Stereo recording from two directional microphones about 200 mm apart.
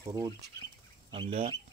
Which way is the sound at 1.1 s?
30° right (ahead or behind).